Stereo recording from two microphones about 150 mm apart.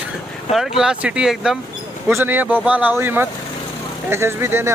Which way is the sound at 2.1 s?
15° right (ahead or behind).